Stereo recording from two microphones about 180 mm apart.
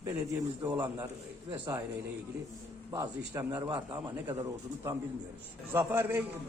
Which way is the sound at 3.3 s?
20° right (ahead or behind).